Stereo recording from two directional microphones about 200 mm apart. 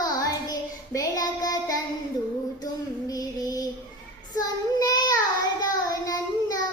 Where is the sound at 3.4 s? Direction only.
20° left (ahead or behind).